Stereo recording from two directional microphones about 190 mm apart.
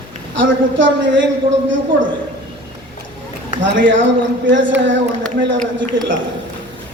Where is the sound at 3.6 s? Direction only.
70° right (ahead or behind).